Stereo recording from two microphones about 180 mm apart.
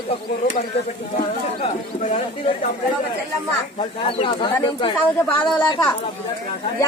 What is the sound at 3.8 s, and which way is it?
Speech, 30° left (ahead or behind).